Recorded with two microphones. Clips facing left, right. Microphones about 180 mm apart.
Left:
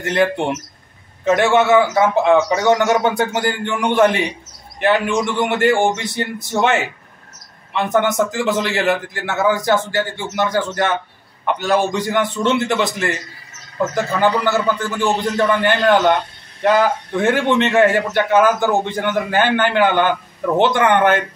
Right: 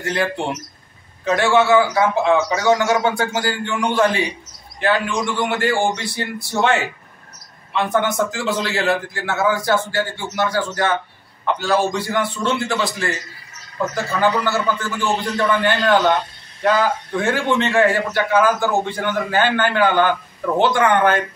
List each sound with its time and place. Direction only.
0.0 s a man's voice: 20° left (ahead or behind)